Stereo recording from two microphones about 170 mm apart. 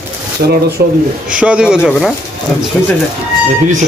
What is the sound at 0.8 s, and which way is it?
Speech, 60° right (ahead or behind).